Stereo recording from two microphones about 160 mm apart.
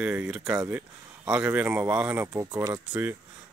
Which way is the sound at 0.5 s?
15° right (ahead or behind).